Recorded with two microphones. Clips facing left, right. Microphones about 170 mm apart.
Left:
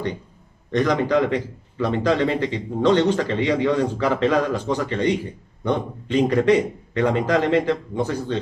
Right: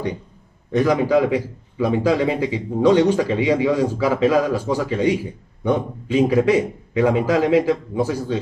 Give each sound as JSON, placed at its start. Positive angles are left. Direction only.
{"t": 0.7, "sound": "a man's voice", "side_deg": -5}